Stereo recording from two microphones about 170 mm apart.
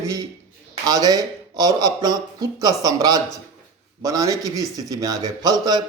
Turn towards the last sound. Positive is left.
turn(degrees=-25)  # may be behind; listen again after turning